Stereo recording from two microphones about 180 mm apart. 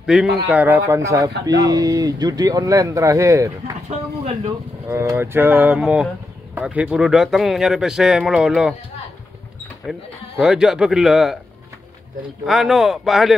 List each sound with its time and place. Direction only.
0.0 s speech: 5° right (ahead or behind)
3.9 s speech: 30° right (ahead or behind)
4.8 s a man's voice: 15° right (ahead or behind)
9.8 s a man's voice: centre (ahead or behind)
12.4 s a man's voice: centre (ahead or behind)